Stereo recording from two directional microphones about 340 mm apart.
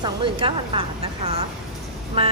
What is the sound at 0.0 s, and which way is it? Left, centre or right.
A woman's voice, centre.